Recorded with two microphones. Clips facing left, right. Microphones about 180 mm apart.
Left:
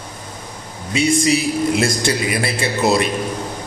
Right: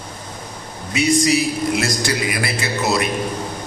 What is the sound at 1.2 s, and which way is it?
A man's voice, 25° left (ahead or behind).